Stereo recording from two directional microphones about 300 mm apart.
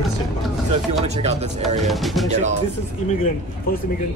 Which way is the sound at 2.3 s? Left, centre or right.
Right.